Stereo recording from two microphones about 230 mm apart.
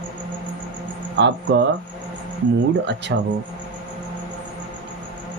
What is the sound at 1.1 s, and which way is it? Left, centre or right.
Speech, right.